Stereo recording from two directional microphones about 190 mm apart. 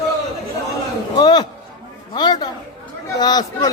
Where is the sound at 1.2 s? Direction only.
25° left (ahead or behind).